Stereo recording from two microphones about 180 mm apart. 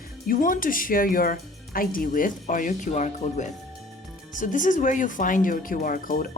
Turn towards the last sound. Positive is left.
turn(degrees=50)  # may be behind; listen again after turning